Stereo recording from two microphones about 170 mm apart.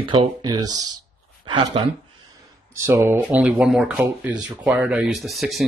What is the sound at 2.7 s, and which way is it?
Speech, 15° right (ahead or behind).